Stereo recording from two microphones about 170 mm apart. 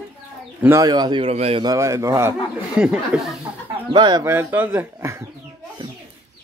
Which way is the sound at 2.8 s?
5° right (ahead or behind).